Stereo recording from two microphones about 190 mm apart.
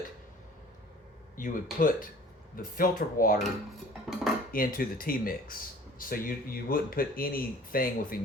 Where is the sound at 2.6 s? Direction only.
50° left (ahead or behind).